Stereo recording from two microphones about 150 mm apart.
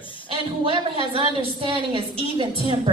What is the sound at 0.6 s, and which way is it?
A woman's voice, 35° right (ahead or behind).